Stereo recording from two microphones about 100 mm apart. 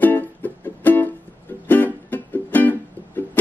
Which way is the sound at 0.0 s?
20° left (ahead or behind).